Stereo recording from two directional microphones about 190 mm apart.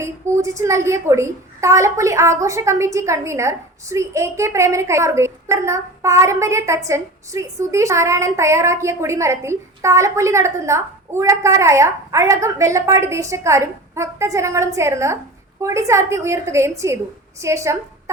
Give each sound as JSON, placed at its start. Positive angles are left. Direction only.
{"t": 0.0, "sound": "a woman's voice", "side_deg": -15}